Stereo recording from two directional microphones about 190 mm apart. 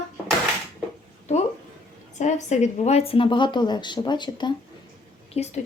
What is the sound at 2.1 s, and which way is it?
Speech, 40° left (ahead or behind).